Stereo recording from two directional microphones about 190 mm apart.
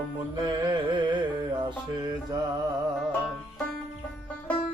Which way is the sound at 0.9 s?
25° right (ahead or behind).